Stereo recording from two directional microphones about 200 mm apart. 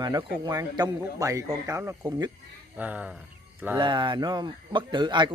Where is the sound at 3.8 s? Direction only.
25° right (ahead or behind).